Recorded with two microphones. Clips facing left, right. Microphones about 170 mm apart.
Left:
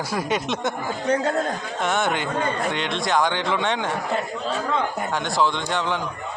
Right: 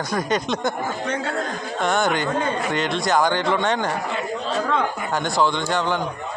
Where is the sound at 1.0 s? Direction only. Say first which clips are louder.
Left 8 dB; 40° left (ahead or behind).